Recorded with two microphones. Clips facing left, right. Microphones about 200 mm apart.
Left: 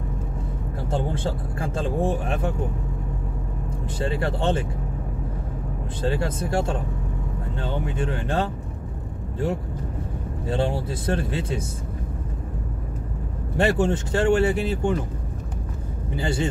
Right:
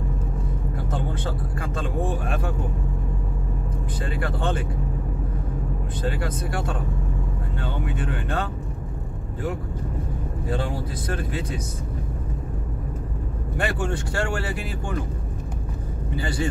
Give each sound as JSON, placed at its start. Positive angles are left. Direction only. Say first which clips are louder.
{"t": 0.8, "sound": "speech", "louder": "left 5 dB", "side_deg": 30}
{"t": 4.0, "sound": "speech", "louder": "left 4 dB", "side_deg": 25}
{"t": 6.0, "sound": "speech", "louder": "left 3 dB", "side_deg": 25}
{"t": 10.5, "sound": "speech", "louder": "left 4 dB", "side_deg": 25}
{"t": 13.6, "sound": "speech", "louder": "left 6 dB", "side_deg": 25}
{"t": 16.2, "sound": "speech", "louder": "left 2 dB", "side_deg": 25}